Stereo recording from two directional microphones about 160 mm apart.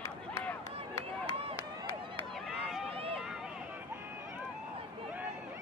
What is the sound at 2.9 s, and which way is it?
Run, 35° right (ahead or behind).